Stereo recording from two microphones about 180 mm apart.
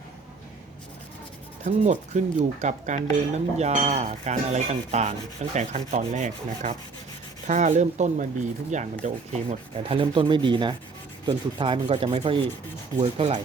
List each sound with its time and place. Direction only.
1.6 s speech: 45° right (ahead or behind)
3.3 s dishes: 40° right (ahead or behind)
7.4 s speech: 40° right (ahead or behind)
8.7 s rub: 40° right (ahead or behind)
13.0 s dishes: 35° right (ahead or behind)